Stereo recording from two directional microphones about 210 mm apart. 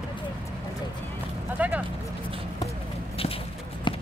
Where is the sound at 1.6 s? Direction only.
5° right (ahead or behind).